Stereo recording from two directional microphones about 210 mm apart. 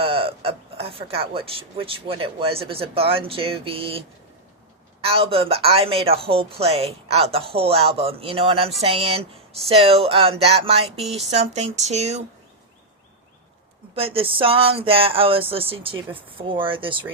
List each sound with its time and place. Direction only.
0.0 s speech: 25° right (ahead or behind)
13.9 s speech: 25° right (ahead or behind)